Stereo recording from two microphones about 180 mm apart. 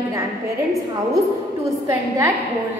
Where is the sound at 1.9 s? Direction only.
15° right (ahead or behind).